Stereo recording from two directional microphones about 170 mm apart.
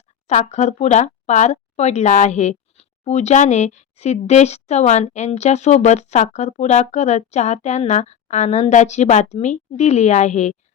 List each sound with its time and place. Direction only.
0.3 s speech: 45° left (ahead or behind)